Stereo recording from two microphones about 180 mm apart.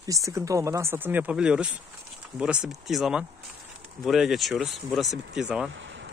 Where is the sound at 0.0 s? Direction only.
20° right (ahead or behind).